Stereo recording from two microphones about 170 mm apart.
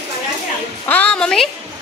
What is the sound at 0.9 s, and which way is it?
Speech, 10° left (ahead or behind).